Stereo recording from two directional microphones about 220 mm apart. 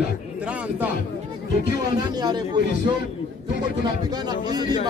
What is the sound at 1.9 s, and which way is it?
Speech, 20° right (ahead or behind).